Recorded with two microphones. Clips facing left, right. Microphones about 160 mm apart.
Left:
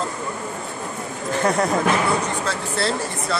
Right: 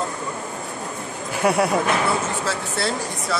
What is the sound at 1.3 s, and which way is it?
Speech, 10° right (ahead or behind).